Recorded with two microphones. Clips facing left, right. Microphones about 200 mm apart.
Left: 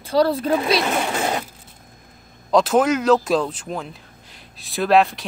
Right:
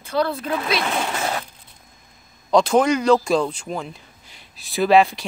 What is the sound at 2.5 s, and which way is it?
Speech, centre (ahead or behind).